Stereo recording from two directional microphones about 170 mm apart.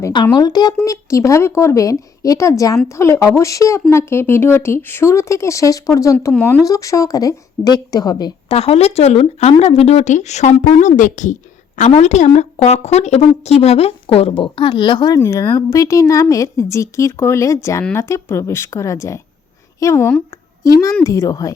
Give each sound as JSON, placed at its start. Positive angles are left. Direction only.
{"t": 0.0, "sound": "a woman's voice", "side_deg": 25}
{"t": 8.4, "sound": "a woman's voice", "side_deg": 35}